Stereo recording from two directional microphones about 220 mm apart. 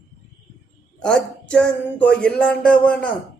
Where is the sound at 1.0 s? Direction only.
5° left (ahead or behind).